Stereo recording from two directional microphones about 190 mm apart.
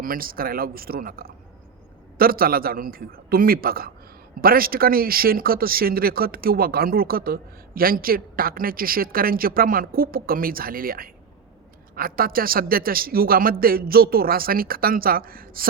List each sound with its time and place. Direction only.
0.0 s speech: 50° right (ahead or behind)